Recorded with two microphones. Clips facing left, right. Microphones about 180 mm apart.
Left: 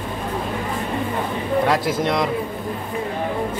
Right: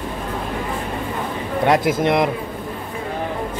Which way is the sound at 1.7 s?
20° right (ahead or behind).